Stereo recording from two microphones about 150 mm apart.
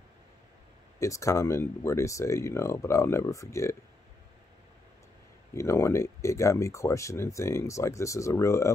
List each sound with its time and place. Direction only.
0.9 s speech: 20° left (ahead or behind)
5.5 s speech: 20° left (ahead or behind)